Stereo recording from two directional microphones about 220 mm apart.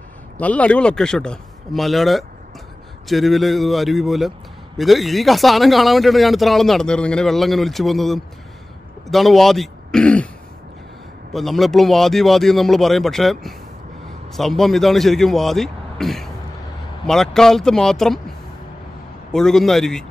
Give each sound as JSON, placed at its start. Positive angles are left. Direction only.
{"t": 0.4, "sound": "a man's voice", "side_deg": 5}
{"t": 11.3, "sound": "speech", "side_deg": 0}
{"t": 19.3, "sound": "speech", "side_deg": 0}